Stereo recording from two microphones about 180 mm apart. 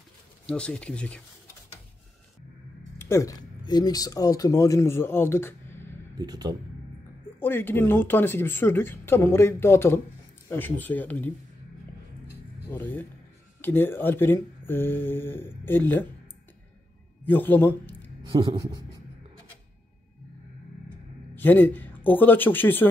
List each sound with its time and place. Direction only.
0.5 s speech: 5° left (ahead or behind)
3.0 s speech: 15° left (ahead or behind)
6.1 s speech: 20° right (ahead or behind)
7.3 s speech: 10° left (ahead or behind)
12.6 s speech: 10° left (ahead or behind)
17.2 s a sound: 10° left (ahead or behind)
18.3 s speech: 25° right (ahead or behind)
21.4 s speech: 10° left (ahead or behind)